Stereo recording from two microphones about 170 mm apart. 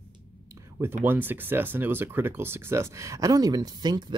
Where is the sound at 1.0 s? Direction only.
10° right (ahead or behind).